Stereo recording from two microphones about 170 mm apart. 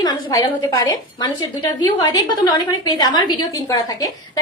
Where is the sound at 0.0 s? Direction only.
20° left (ahead or behind).